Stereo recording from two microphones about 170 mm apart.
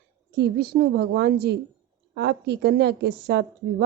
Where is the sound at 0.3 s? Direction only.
75° right (ahead or behind).